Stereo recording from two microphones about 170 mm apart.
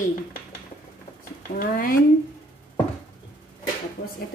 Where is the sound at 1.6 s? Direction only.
55° left (ahead or behind).